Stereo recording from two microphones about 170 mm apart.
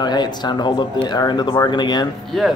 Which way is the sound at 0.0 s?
25° left (ahead or behind).